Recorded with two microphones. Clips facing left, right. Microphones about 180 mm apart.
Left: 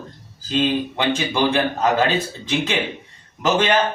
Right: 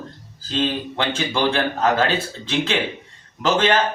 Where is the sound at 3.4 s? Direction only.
15° left (ahead or behind).